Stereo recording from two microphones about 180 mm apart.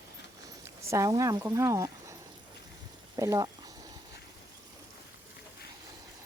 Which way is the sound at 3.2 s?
20° right (ahead or behind).